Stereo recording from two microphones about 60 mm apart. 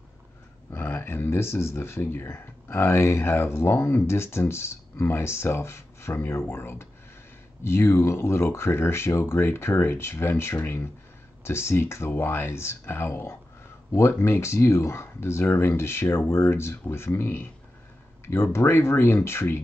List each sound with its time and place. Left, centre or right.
0.7 s speech: left